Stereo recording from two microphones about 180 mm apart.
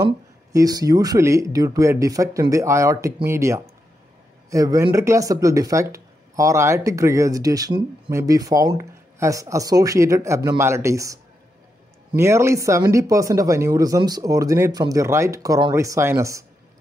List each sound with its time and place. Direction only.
0.0 s speech: 20° right (ahead or behind)
12.2 s speech: 15° right (ahead or behind)